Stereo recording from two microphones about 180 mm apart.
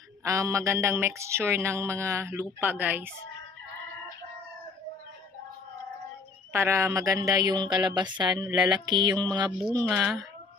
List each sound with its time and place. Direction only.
0.2 s mantra: 15° right (ahead or behind)
6.5 s a woman's voice: 15° right (ahead or behind)
9.8 s speech: centre (ahead or behind)